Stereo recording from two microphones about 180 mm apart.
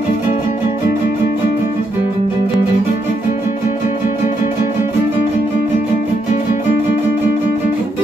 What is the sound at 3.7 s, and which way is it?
Music, 45° left (ahead or behind).